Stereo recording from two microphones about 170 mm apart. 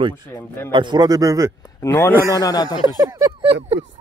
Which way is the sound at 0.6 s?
25° right (ahead or behind).